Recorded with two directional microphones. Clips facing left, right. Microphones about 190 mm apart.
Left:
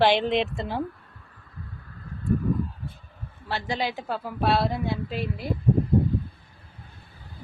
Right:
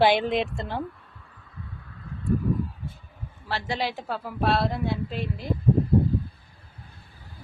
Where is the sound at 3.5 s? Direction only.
Centre (ahead or behind).